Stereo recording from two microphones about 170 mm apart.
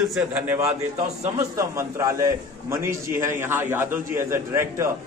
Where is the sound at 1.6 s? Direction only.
15° right (ahead or behind).